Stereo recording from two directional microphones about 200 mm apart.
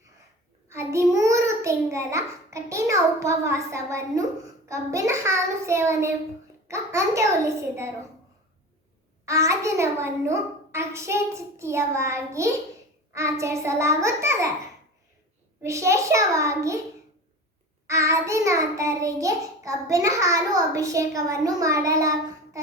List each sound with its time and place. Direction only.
0.7 s child singing: 15° right (ahead or behind)
1.1 s a child's voice: 15° right (ahead or behind)
4.6 s child singing: 15° right (ahead or behind)
9.2 s child singing: 15° right (ahead or behind)
15.6 s child singing: 15° right (ahead or behind)
17.8 s child singing: 15° right (ahead or behind)